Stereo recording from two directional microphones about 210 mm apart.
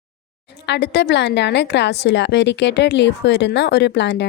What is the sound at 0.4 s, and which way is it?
Speech, 55° left (ahead or behind).